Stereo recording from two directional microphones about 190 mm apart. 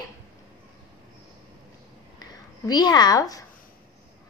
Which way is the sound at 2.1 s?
20° left (ahead or behind).